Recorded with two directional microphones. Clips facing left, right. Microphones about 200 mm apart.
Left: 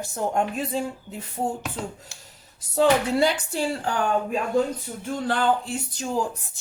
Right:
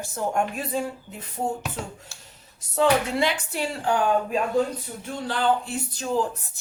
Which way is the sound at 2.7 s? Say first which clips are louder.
Left 2 dB; 35° left (ahead or behind).